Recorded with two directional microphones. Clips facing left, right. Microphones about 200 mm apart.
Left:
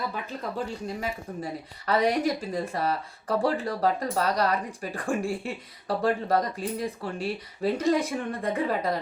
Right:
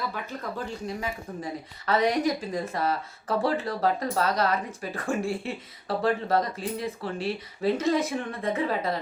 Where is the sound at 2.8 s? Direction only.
35° left (ahead or behind).